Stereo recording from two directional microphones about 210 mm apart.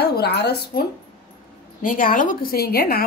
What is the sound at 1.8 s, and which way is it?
Speech, 40° left (ahead or behind).